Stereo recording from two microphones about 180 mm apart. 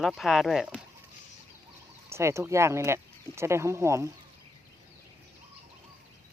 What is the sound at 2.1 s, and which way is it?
Speech, 15° right (ahead or behind).